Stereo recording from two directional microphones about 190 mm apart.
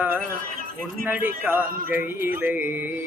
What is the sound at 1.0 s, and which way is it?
Music, 10° right (ahead or behind).